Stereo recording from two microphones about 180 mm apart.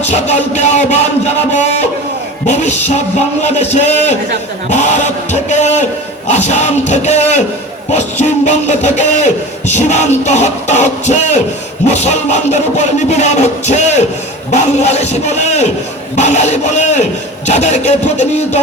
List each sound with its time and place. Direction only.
0.0 s music: 40° left (ahead or behind)